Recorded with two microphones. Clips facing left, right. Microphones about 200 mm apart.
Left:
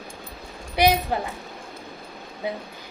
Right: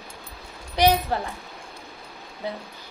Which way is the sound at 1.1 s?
15° left (ahead or behind).